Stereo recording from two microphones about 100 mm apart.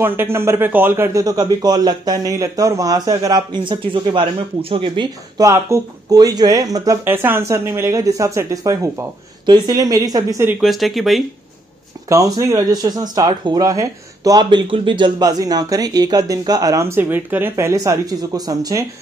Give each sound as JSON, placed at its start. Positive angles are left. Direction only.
{"t": 0.0, "sound": "a man's voice", "side_deg": -25}
{"t": 1.2, "sound": "speech", "side_deg": -40}
{"t": 3.6, "sound": "speech", "side_deg": -55}
{"t": 5.4, "sound": "speech", "side_deg": -30}
{"t": 7.1, "sound": "a man's voice", "side_deg": -20}
{"t": 10.6, "sound": "speech", "side_deg": 0}
{"t": 12.1, "sound": "speech", "side_deg": -35}